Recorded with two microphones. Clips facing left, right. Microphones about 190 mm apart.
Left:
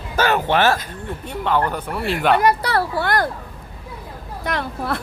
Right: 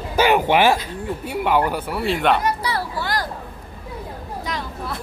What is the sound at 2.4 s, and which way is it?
Speech, 60° left (ahead or behind).